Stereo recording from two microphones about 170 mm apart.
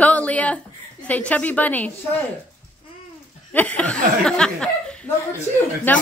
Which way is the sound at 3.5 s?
10° left (ahead or behind).